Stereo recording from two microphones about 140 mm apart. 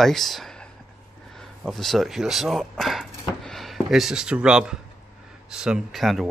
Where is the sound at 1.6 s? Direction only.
Centre (ahead or behind).